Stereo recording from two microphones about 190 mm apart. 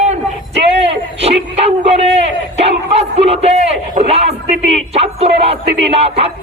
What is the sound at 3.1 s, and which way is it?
Speech, 35° right (ahead or behind).